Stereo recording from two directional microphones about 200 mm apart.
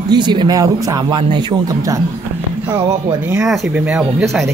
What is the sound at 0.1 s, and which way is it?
Speech, 20° right (ahead or behind).